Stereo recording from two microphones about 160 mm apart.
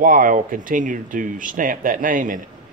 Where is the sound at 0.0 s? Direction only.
60° right (ahead or behind).